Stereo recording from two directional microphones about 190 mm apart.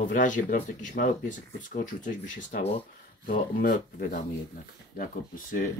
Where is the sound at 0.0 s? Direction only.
40° left (ahead or behind).